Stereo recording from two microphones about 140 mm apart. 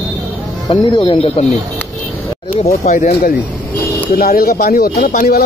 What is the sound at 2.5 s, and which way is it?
Speech, 50° left (ahead or behind).